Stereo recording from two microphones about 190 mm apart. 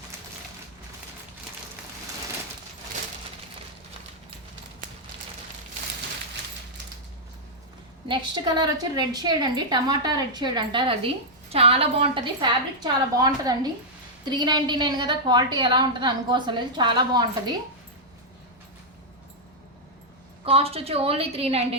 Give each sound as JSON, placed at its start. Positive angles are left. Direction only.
{"t": 8.0, "sound": "a woman's voice", "side_deg": -25}
{"t": 20.4, "sound": "a woman's voice", "side_deg": -30}